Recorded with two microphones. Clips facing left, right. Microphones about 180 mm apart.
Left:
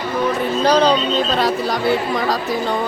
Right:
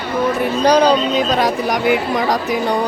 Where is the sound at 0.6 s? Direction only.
15° right (ahead or behind).